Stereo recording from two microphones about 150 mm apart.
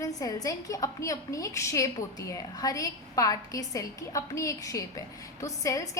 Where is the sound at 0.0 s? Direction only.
25° left (ahead or behind).